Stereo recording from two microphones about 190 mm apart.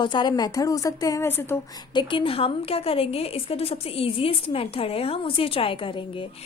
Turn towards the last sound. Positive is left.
turn(degrees=25)  # may be behind; listen again after turning